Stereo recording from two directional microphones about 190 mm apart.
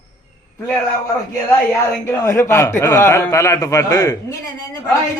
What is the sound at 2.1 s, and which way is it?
A man's voice, 15° left (ahead or behind).